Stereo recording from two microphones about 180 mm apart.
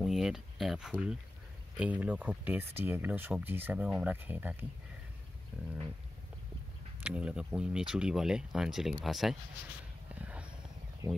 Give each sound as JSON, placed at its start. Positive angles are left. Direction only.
{"t": 0.0, "sound": "speech", "side_deg": 0}
{"t": 7.0, "sound": "speech", "side_deg": -5}
{"t": 10.1, "sound": "a sound", "side_deg": -10}
{"t": 11.0, "sound": "speech", "side_deg": -15}